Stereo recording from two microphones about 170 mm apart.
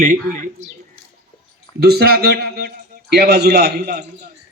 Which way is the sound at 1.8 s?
65° right (ahead or behind).